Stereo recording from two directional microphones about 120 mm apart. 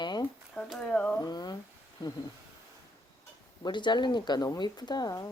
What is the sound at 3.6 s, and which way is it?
Speech, 40° left (ahead or behind).